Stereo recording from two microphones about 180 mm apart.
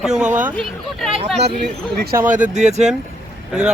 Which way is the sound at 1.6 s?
65° right (ahead or behind).